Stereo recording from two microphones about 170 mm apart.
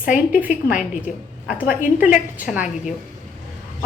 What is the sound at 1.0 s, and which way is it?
A woman's voice, 10° right (ahead or behind).